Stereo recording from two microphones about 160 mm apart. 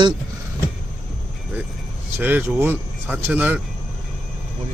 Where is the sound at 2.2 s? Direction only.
10° right (ahead or behind).